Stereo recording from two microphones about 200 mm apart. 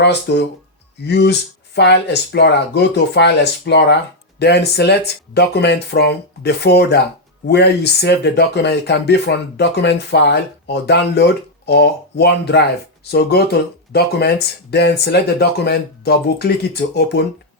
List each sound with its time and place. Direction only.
0.0 s speech: 60° left (ahead or behind)